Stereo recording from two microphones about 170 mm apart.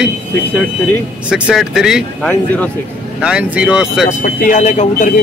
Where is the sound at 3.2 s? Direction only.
5° right (ahead or behind).